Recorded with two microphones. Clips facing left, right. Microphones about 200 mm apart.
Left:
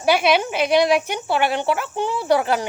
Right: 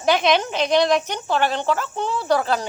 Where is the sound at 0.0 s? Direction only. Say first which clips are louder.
Left 1 dB; 10° left (ahead or behind).